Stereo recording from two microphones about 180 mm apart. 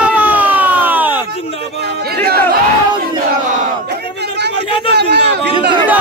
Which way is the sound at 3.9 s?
70° right (ahead or behind).